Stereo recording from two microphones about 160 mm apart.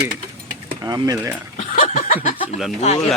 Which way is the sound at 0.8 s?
20° right (ahead or behind).